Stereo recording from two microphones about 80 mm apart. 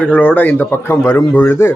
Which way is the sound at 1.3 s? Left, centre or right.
Left.